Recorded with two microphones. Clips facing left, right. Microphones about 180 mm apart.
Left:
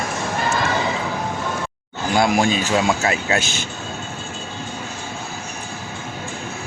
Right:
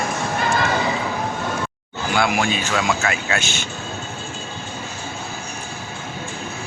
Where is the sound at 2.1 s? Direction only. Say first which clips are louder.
Left 3 dB; 35° left (ahead or behind).